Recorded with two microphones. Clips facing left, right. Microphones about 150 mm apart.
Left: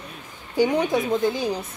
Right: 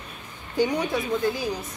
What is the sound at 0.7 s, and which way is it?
Speech, 20° left (ahead or behind).